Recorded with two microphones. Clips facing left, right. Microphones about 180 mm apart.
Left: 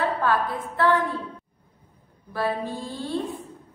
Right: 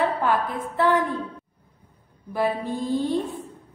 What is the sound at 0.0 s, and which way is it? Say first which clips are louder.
A woman's voice: right 1 dB; 20° right (ahead or behind).